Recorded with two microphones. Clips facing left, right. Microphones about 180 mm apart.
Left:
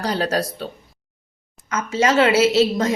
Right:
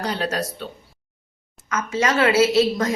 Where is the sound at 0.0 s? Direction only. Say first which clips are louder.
Left 3 dB; 35° left (ahead or behind).